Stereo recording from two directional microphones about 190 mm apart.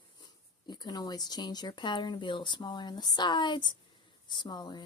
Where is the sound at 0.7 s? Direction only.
20° left (ahead or behind).